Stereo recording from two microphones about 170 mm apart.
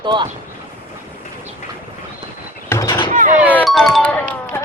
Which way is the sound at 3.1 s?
50° right (ahead or behind).